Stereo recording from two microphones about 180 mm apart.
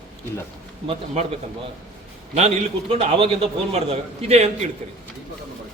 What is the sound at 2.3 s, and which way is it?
A man's voice, 35° right (ahead or behind).